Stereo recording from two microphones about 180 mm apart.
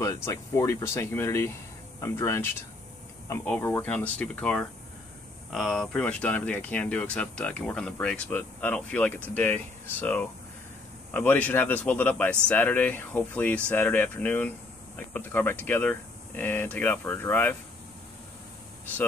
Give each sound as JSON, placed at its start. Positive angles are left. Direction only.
{"t": 0.0, "sound": "speech", "side_deg": 15}